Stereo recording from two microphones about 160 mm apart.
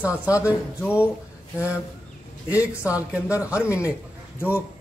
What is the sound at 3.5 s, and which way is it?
Speech, 20° left (ahead or behind).